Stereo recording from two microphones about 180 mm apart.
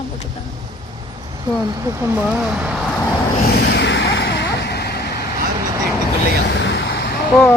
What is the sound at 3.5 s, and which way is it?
Vehicle, 65° left (ahead or behind).